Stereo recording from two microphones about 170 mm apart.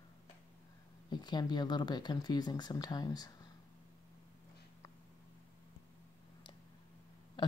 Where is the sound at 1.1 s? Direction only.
25° left (ahead or behind).